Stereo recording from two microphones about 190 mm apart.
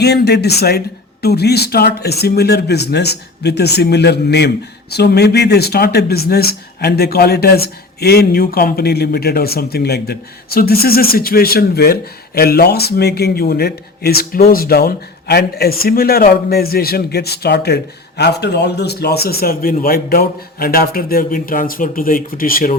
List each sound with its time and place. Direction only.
0.0 s a man's voice: 60° left (ahead or behind)